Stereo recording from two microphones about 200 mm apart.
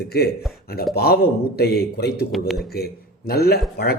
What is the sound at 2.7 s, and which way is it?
Speech, 50° left (ahead or behind).